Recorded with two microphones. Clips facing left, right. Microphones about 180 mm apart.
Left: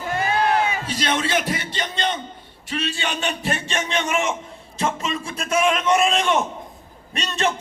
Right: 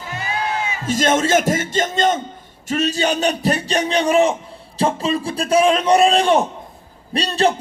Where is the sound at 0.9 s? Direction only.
45° right (ahead or behind).